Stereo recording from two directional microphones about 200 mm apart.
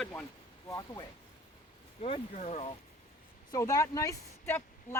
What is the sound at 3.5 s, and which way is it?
Speech, 15° left (ahead or behind).